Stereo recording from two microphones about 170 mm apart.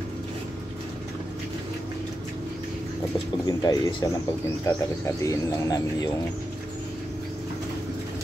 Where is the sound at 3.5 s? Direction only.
25° left (ahead or behind).